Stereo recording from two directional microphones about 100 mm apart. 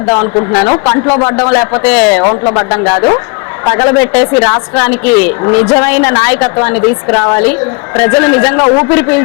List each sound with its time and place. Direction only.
0.0 s a woman's voice: 20° left (ahead or behind)